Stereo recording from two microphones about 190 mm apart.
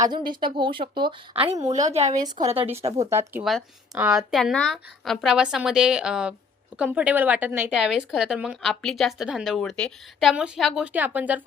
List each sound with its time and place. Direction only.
0.3 s a woman's voice: 25° right (ahead or behind)
1.7 s speech: 35° right (ahead or behind)
3.1 s speech: 15° right (ahead or behind)